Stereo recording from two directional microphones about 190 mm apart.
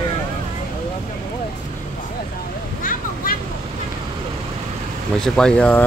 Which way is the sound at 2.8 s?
45° left (ahead or behind).